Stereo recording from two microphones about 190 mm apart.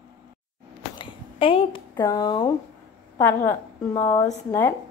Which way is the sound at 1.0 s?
30° left (ahead or behind).